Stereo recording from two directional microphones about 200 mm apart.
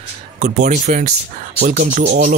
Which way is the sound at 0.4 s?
35° right (ahead or behind).